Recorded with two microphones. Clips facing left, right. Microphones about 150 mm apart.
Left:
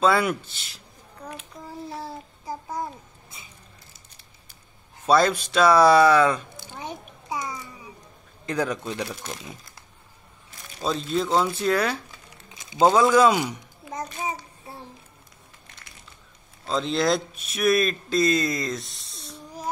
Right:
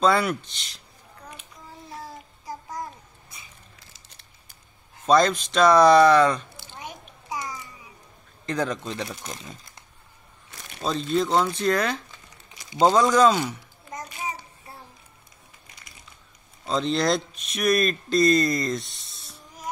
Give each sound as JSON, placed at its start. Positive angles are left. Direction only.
{"t": 0.0, "sound": "speech", "side_deg": 5}
{"t": 1.9, "sound": "babbling", "side_deg": 30}
{"t": 5.0, "sound": "speech", "side_deg": 10}
{"t": 6.8, "sound": "a sound", "side_deg": 25}
{"t": 8.5, "sound": "speech", "side_deg": 10}
{"t": 12.4, "sound": "a sound", "side_deg": 20}
{"t": 12.8, "sound": "speech", "side_deg": 5}
{"t": 16.6, "sound": "speech", "side_deg": 0}